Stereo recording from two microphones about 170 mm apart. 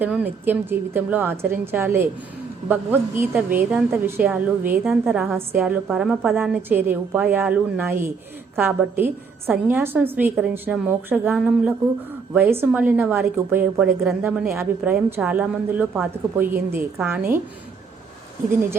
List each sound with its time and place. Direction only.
0.0 s a woman's voice: 10° right (ahead or behind)